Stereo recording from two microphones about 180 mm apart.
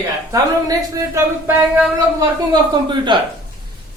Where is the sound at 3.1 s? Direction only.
25° right (ahead or behind).